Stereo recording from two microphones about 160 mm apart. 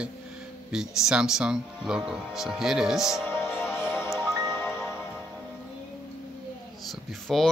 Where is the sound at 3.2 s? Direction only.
15° left (ahead or behind).